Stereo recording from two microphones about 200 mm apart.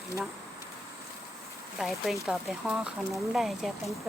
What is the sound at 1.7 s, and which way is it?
Speech, centre (ahead or behind).